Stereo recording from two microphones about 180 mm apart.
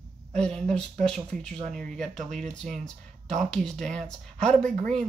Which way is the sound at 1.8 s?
Centre (ahead or behind).